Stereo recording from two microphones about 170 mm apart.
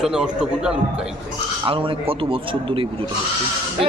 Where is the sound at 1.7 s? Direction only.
35° right (ahead or behind).